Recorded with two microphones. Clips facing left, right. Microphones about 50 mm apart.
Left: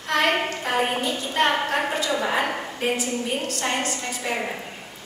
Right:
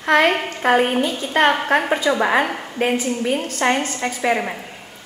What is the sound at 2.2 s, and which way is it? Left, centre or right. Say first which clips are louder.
Speech: right 5 dB; right.